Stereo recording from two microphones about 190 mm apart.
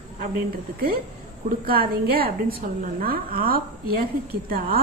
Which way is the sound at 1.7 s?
50° right (ahead or behind).